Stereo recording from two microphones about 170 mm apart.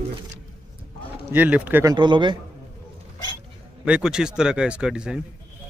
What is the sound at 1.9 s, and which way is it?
Speech, 25° right (ahead or behind).